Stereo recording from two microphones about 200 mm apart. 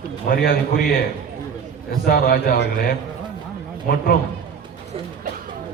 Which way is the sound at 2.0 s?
50° left (ahead or behind).